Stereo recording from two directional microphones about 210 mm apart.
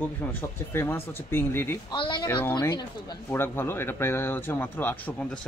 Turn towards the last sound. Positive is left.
turn(degrees=10)  # may be behind; listen again after turning